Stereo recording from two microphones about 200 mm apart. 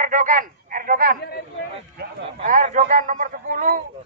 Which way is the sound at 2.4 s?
40° right (ahead or behind).